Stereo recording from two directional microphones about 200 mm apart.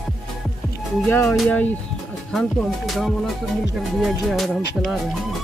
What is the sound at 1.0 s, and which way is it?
Music, 10° left (ahead or behind).